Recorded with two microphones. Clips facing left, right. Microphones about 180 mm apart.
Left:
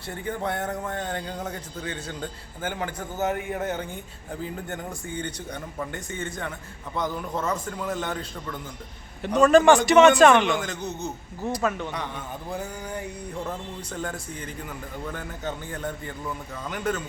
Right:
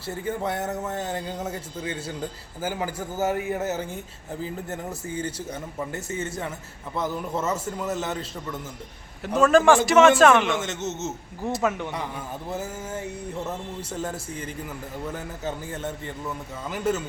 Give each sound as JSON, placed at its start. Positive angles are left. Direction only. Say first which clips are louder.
{"t": 0.1, "sound": "speech", "louder": "right 2 dB", "side_deg": -5}
{"t": 11.4, "sound": "speech", "louder": "right 1 dB", "side_deg": -20}
{"t": 12.5, "sound": "speech", "louder": "right 1 dB", "side_deg": -5}
{"t": 15.7, "sound": "speech", "louder": "right 1 dB", "side_deg": -5}